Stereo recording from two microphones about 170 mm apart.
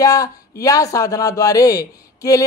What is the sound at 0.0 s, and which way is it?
Speech, 20° left (ahead or behind).